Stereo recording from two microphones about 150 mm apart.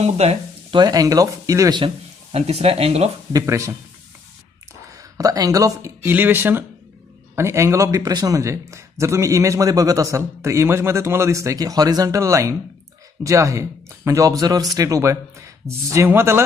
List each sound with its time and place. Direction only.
0.0 s speech: 45° right (ahead or behind)
0.7 s a man's voice: 25° right (ahead or behind)
2.3 s speech: 40° right (ahead or behind)
3.3 s a man's voice: 20° right (ahead or behind)
4.9 s a man's voice: 25° right (ahead or behind)